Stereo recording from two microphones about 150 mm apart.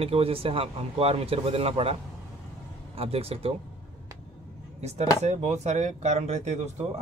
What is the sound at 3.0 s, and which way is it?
Speech, 40° right (ahead or behind).